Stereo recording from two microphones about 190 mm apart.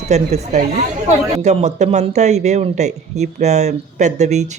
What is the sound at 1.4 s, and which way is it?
Speech, 35° right (ahead or behind).